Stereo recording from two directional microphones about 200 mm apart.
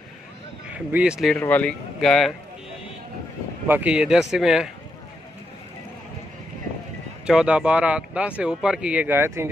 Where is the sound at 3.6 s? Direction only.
10° right (ahead or behind).